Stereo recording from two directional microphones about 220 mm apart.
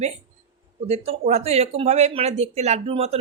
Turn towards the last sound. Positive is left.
turn(degrees=-25)  # may be behind; listen again after turning